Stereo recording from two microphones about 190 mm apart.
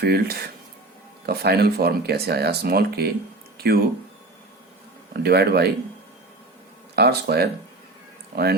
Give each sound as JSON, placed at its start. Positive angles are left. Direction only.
{"t": 0.0, "sound": "speech", "side_deg": -55}
{"t": 5.2, "sound": "speech", "side_deg": -55}
{"t": 6.9, "sound": "speech", "side_deg": -60}